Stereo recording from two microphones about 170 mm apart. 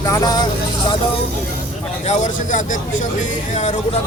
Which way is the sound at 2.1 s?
45° left (ahead or behind).